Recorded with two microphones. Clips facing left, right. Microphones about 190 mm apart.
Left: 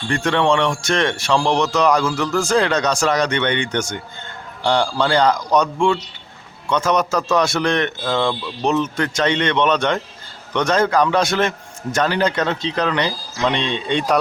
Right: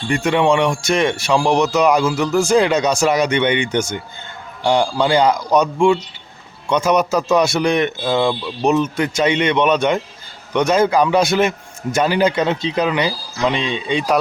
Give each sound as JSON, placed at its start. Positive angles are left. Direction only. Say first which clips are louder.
{"t": 0.1, "sound": "speech", "louder": "right 2 dB", "side_deg": -10}